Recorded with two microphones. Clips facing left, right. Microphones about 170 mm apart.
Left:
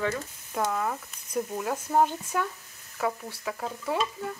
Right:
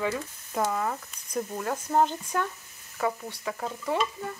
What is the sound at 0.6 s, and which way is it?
Speech, centre (ahead or behind).